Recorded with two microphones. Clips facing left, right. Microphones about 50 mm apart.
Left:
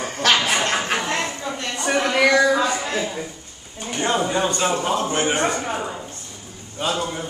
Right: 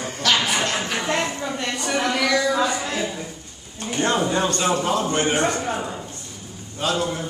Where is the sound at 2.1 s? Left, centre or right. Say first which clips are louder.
Left 7 dB; left.